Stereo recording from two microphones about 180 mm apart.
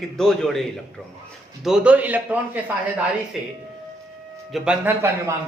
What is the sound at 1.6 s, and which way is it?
Speech, 5° right (ahead or behind).